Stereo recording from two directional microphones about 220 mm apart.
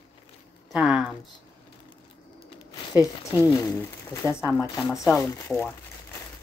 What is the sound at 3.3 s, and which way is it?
Speech, 15° left (ahead or behind).